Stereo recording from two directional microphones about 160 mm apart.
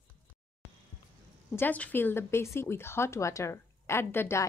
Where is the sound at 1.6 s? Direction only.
10° left (ahead or behind).